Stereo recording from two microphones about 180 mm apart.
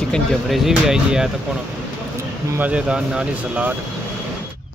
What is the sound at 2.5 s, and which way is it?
Speech, 10° right (ahead or behind).